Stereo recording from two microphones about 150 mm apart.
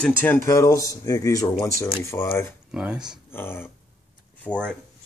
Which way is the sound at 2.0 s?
20° left (ahead or behind).